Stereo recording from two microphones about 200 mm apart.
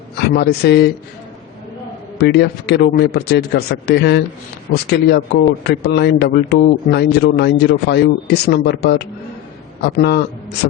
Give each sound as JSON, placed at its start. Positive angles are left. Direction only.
{"t": 0.2, "sound": "a man's voice", "side_deg": 55}
{"t": 2.1, "sound": "a man's voice", "side_deg": 55}
{"t": 10.6, "sound": "a sound", "side_deg": 55}